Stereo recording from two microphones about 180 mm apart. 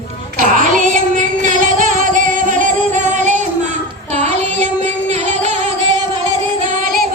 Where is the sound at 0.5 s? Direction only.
45° right (ahead or behind).